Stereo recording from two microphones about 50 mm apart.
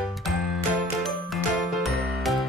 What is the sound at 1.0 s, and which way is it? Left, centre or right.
Jingle, centre.